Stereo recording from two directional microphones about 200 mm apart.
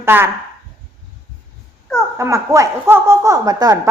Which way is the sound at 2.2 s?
15° right (ahead or behind).